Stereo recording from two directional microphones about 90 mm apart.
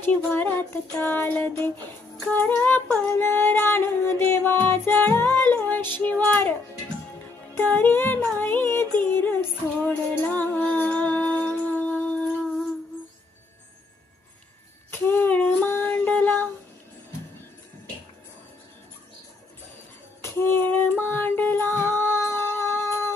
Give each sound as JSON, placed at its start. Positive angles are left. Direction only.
{"t": 0.0, "sound": "child singing", "side_deg": 20}
{"t": 4.9, "sound": "music", "side_deg": 20}
{"t": 5.5, "sound": "child singing", "side_deg": 20}
{"t": 7.5, "sound": "child singing", "side_deg": 20}
{"t": 10.2, "sound": "music", "side_deg": 15}
{"t": 14.8, "sound": "female singing", "side_deg": 25}
{"t": 20.2, "sound": "female singing", "side_deg": 25}